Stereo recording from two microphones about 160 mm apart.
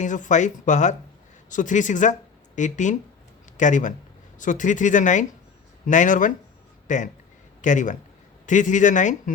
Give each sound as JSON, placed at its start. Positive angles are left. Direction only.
{"t": 0.0, "sound": "speech", "side_deg": 50}